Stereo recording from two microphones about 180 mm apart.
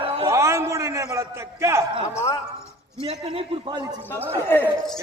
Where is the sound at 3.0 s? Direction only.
30° right (ahead or behind).